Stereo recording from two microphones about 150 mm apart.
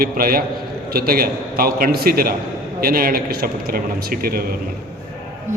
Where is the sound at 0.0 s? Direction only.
80° right.